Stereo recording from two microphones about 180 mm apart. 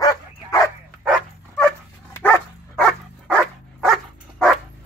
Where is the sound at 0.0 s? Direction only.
20° left (ahead or behind).